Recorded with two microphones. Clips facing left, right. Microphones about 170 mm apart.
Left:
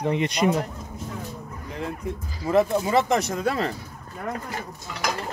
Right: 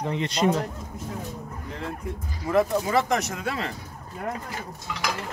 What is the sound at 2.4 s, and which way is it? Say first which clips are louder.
Speech: left 2 dB; 25° left (ahead or behind).